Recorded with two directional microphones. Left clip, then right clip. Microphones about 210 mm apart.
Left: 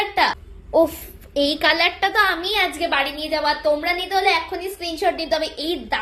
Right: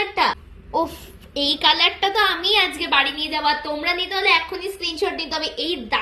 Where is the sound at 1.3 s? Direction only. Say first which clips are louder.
Even; 35° left (ahead or behind).